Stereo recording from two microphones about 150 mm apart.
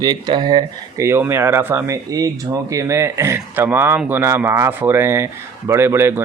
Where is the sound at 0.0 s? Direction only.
30° right (ahead or behind).